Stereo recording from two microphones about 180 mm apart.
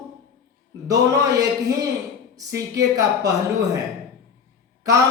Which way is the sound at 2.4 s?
20° right (ahead or behind).